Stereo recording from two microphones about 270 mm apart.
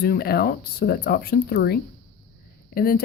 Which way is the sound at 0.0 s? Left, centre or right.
Left.